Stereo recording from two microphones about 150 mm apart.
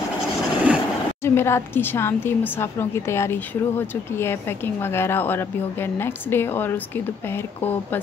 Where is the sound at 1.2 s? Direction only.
15° left (ahead or behind).